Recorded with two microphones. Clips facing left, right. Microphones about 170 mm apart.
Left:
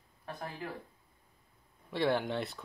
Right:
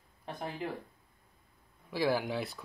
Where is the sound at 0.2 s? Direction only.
20° right (ahead or behind).